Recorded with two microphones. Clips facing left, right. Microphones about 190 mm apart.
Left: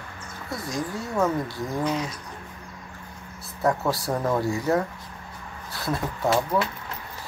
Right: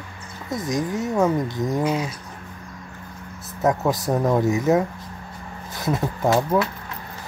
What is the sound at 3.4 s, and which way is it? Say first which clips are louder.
Speech: right 3 dB; 20° right (ahead or behind).